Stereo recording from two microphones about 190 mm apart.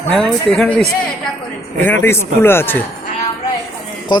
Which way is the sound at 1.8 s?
10° left (ahead or behind).